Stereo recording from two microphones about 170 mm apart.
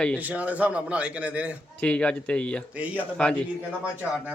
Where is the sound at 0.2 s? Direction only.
10° right (ahead or behind).